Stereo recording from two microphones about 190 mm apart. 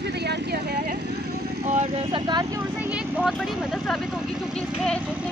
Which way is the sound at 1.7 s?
25° right (ahead or behind).